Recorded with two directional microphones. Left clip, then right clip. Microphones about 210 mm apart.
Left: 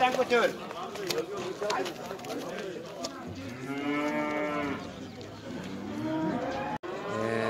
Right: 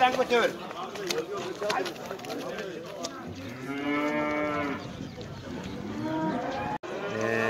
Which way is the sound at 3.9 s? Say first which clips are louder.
Right 2 dB; 40° right (ahead or behind).